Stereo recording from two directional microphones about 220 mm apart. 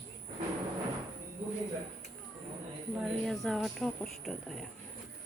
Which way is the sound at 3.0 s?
Centre (ahead or behind).